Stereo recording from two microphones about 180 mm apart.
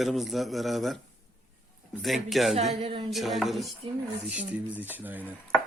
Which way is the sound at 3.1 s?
Centre (ahead or behind).